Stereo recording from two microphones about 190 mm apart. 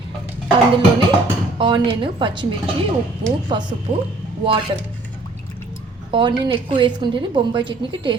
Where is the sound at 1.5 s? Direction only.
25° right (ahead or behind).